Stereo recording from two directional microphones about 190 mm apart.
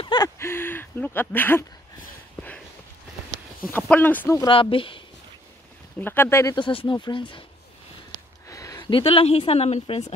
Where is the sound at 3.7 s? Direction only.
10° left (ahead or behind).